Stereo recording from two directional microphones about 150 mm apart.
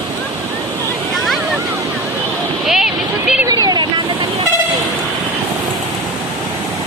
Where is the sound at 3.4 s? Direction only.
25° right (ahead or behind).